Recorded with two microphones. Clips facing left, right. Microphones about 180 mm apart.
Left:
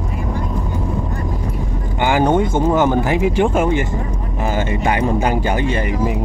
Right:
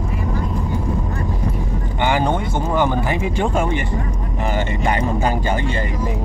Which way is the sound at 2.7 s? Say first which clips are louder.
Even; 10° left (ahead or behind).